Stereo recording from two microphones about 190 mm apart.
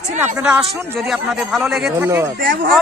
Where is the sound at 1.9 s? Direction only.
10° right (ahead or behind).